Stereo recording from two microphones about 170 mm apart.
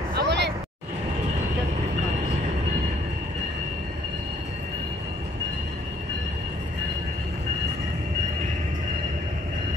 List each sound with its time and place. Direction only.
0.1 s vehicle: 85° right